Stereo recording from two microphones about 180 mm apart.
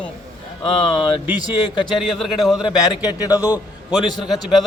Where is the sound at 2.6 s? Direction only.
20° left (ahead or behind).